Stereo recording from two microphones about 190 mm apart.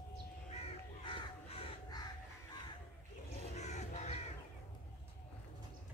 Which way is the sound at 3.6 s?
35° left (ahead or behind).